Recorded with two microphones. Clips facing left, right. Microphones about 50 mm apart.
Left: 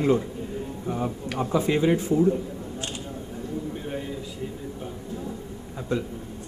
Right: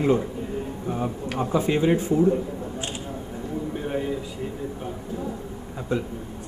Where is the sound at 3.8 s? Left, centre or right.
Centre.